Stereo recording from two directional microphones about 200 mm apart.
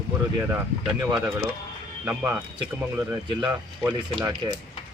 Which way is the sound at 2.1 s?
10° right (ahead or behind).